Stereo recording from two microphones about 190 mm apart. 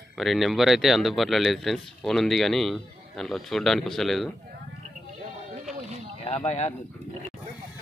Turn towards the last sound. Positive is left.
turn(degrees=35)  # may be behind; listen again after turning